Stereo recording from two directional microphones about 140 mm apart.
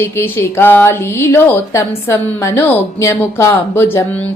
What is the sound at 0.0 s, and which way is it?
Speech, 15° left (ahead or behind).